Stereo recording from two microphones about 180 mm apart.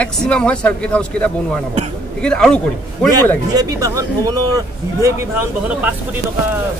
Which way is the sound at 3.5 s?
20° right (ahead or behind).